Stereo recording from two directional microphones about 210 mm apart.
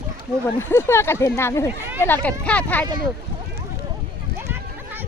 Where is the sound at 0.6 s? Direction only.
10° left (ahead or behind).